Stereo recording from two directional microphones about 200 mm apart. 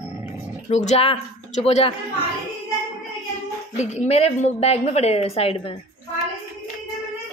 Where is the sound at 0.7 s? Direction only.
35° left (ahead or behind).